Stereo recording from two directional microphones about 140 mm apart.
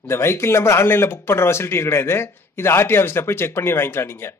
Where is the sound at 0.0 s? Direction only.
20° left (ahead or behind).